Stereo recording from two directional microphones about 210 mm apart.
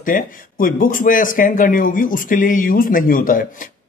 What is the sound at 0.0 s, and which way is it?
Speech, 40° left (ahead or behind).